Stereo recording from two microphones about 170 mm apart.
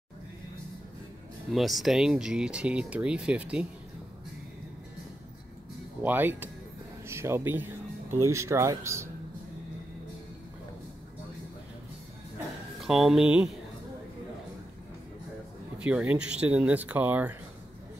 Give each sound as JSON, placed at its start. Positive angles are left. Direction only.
{"t": 1.5, "sound": "speech", "side_deg": 0}
{"t": 6.0, "sound": "speech", "side_deg": -10}
{"t": 12.8, "sound": "speech", "side_deg": 0}
{"t": 15.8, "sound": "speech", "side_deg": -5}